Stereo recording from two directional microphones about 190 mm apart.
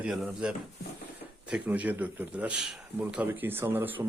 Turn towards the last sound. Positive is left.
turn(degrees=-10)  # may be behind; listen again after turning